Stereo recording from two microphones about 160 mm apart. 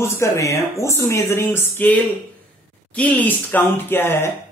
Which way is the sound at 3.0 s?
10° left (ahead or behind).